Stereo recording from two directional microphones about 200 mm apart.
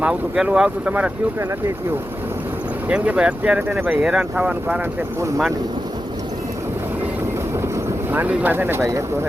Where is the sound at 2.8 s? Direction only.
5° right (ahead or behind).